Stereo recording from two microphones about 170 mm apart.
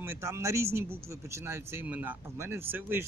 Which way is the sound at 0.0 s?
15° right (ahead or behind).